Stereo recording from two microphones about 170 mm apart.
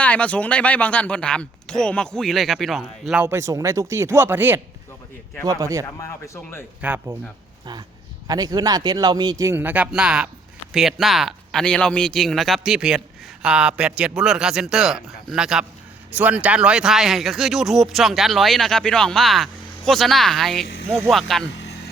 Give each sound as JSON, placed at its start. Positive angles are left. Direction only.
{"t": 0.0, "sound": "speech", "side_deg": 5}
{"t": 6.0, "sound": "speech", "side_deg": 20}
{"t": 6.8, "sound": "speech", "side_deg": -10}
{"t": 8.3, "sound": "speech", "side_deg": -20}